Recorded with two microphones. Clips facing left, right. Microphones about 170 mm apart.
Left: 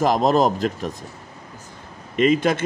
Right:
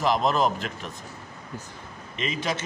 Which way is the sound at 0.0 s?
40° left (ahead or behind).